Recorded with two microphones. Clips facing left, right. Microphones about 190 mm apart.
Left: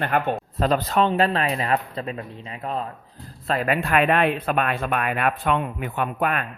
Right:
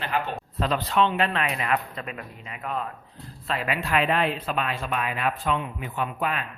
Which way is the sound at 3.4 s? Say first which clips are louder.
Left 5 dB; 45° left (ahead or behind).